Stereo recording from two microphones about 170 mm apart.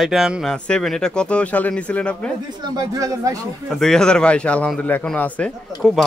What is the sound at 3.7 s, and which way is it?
A man's voice, 5° left (ahead or behind).